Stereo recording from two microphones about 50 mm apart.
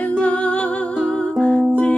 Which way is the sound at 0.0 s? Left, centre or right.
Left.